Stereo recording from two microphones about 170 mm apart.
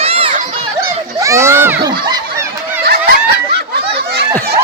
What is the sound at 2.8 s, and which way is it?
Snicker, 70° right (ahead or behind).